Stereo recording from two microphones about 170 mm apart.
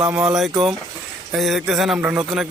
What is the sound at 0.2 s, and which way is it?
Speech, 5° right (ahead or behind).